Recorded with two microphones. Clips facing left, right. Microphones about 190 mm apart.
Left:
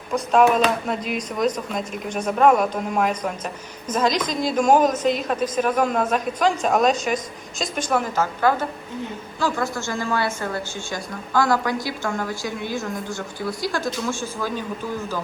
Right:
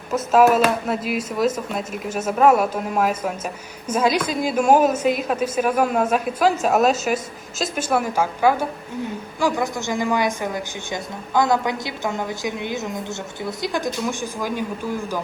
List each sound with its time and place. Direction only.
0.1 s a woman's voice: 5° right (ahead or behind)